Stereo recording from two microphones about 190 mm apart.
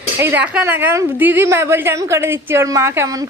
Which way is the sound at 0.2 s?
10° right (ahead or behind).